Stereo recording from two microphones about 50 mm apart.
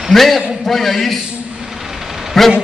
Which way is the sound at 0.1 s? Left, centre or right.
Centre.